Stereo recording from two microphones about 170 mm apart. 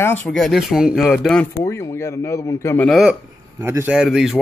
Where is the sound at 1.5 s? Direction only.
20° left (ahead or behind).